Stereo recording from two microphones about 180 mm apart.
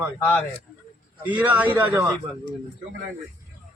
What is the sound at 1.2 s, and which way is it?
Speech, 10° right (ahead or behind).